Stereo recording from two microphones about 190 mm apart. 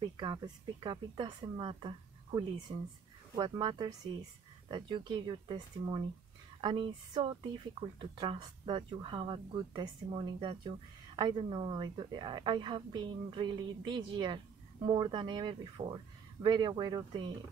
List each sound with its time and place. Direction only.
0.2 s speech: 25° right (ahead or behind)